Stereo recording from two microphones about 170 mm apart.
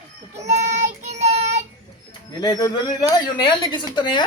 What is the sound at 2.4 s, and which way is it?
A woman's voice, 20° left (ahead or behind).